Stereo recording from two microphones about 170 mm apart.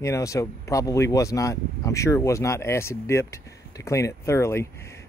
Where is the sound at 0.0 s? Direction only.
20° left (ahead or behind).